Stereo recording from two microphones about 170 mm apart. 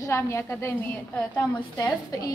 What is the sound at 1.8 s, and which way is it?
Speech, 20° left (ahead or behind).